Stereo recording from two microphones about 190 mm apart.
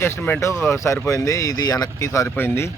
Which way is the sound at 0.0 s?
15° left (ahead or behind).